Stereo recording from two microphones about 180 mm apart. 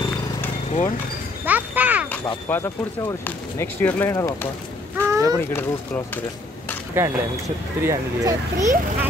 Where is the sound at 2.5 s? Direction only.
15° left (ahead or behind).